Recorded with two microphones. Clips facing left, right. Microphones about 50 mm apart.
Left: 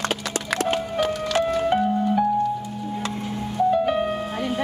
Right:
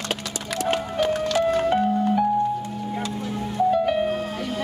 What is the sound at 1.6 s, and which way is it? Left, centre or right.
Music, centre.